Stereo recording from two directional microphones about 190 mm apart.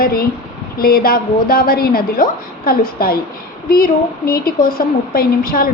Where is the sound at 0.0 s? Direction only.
50° left (ahead or behind).